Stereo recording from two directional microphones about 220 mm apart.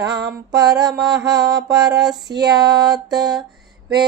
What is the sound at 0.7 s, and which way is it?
Mantra, 15° right (ahead or behind).